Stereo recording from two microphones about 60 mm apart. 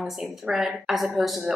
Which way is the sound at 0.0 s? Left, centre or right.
Centre.